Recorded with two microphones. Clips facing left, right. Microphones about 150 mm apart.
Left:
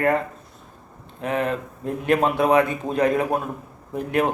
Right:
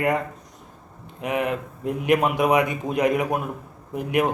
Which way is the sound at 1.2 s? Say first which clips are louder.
Left 1 dB; 15° right (ahead or behind).